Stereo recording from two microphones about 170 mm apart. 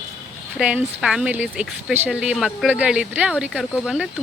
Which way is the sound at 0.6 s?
5° right (ahead or behind).